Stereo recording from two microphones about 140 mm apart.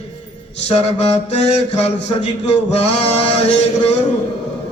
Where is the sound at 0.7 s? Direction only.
50° left (ahead or behind).